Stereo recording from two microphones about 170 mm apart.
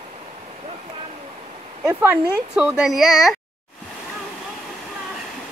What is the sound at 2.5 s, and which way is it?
Speech, 5° right (ahead or behind).